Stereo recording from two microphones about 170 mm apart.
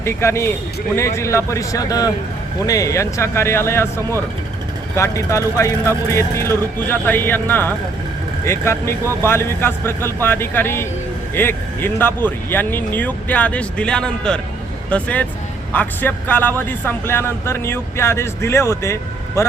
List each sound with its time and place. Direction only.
0.0 s a man's voice: 15° left (ahead or behind)